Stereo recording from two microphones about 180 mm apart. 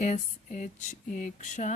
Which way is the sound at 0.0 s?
40° left (ahead or behind).